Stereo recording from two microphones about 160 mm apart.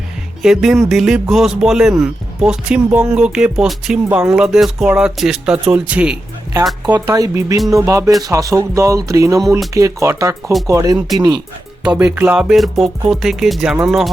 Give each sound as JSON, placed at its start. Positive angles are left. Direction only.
{"t": 0.4, "sound": "a man's voice", "side_deg": -5}
{"t": 6.9, "sound": "a man's voice", "side_deg": -20}